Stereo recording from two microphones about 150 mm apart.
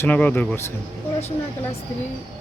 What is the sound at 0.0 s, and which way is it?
Speech, 10° left (ahead or behind).